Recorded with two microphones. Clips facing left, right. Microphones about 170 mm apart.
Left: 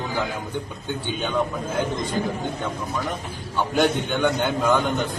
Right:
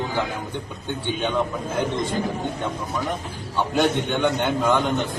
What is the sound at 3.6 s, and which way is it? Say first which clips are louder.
A man's voice: even; centre (ahead or behind).